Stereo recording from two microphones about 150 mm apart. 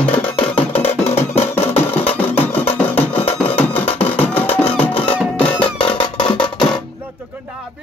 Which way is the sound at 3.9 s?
10° left (ahead or behind).